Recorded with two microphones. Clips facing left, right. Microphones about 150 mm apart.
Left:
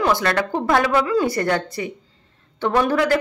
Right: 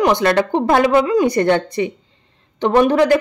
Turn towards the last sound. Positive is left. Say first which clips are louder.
# right 5 dB
turn(degrees=-20)  # may be behind; listen again after turning